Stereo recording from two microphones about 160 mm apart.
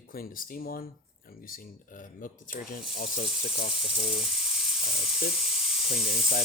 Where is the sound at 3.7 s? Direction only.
5° right (ahead or behind).